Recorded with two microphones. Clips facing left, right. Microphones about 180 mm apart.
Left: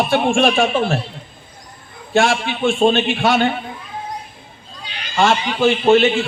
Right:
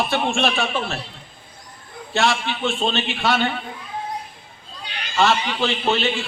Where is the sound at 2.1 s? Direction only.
50° left (ahead or behind).